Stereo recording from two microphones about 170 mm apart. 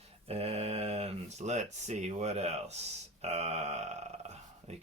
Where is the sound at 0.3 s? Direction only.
35° right (ahead or behind).